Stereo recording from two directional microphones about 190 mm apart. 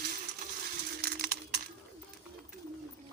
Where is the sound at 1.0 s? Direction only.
55° right (ahead or behind).